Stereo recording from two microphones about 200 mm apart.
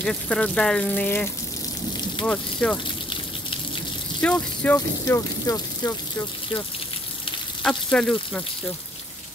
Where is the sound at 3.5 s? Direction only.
25° left (ahead or behind).